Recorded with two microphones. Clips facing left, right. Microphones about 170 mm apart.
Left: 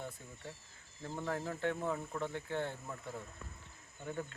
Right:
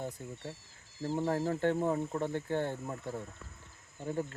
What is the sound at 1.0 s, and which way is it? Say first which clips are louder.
Speech: right 8 dB; 30° right (ahead or behind).